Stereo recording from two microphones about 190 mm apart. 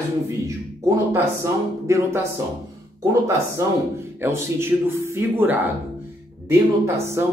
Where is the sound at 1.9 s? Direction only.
15° right (ahead or behind).